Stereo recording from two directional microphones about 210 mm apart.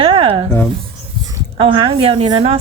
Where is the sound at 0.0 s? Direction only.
25° right (ahead or behind).